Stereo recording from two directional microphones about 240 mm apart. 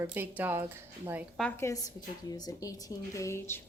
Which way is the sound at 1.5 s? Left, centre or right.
Centre.